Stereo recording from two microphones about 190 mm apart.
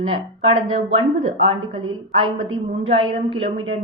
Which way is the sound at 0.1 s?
30° right (ahead or behind).